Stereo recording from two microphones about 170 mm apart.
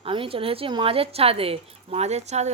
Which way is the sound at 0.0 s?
30° right (ahead or behind).